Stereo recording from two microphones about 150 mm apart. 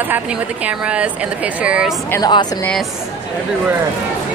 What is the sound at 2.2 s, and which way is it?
Speech, 30° left (ahead or behind).